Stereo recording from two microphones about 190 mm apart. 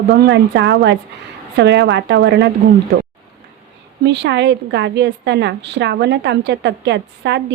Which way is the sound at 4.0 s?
65° right (ahead or behind).